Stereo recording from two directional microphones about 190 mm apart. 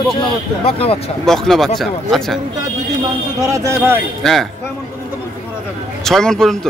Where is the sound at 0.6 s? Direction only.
30° left (ahead or behind).